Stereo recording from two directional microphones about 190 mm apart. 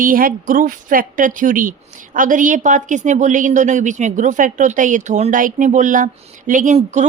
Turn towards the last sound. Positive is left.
turn(degrees=-40)  # may be behind; listen again after turning